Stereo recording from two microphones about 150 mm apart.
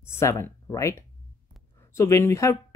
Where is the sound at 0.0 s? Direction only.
15° left (ahead or behind).